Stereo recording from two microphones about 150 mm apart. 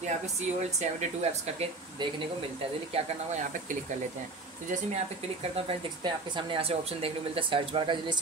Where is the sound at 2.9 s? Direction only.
50° right (ahead or behind).